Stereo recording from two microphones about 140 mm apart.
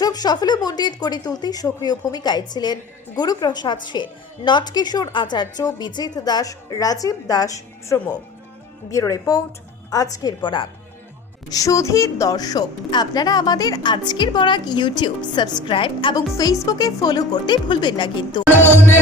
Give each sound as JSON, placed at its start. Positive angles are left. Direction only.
{"t": 0.0, "sound": "a woman's voice", "side_deg": 30}
{"t": 11.4, "sound": "a woman's voice", "side_deg": 25}
{"t": 16.4, "sound": "speech", "side_deg": 25}